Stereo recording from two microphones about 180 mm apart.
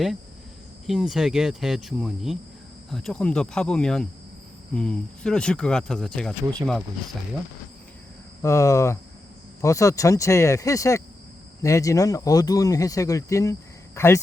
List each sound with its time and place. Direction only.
0.9 s speech: centre (ahead or behind)
8.4 s speech: 15° left (ahead or behind)